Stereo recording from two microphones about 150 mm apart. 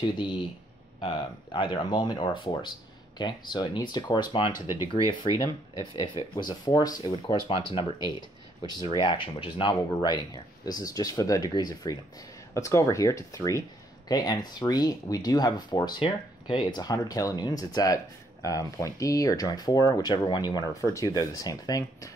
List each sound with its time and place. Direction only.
0.0 s speech: 30° left (ahead or behind)